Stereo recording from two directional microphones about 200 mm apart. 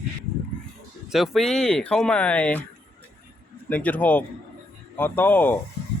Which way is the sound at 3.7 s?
5° left (ahead or behind).